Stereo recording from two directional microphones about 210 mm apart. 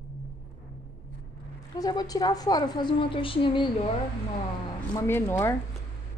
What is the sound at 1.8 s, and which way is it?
A woman's voice, 20° left (ahead or behind).